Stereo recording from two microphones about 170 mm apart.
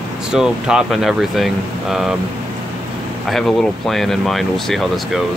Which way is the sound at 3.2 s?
Centre (ahead or behind).